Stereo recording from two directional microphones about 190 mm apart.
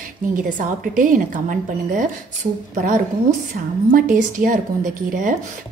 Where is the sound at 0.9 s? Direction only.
45° right (ahead or behind).